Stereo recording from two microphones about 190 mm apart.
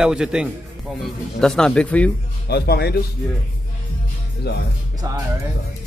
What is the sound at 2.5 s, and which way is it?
Speech, 60° left (ahead or behind).